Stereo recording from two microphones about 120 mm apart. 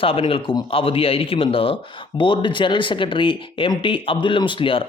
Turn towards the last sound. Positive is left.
turn(degrees=45)  # may be behind; listen again after turning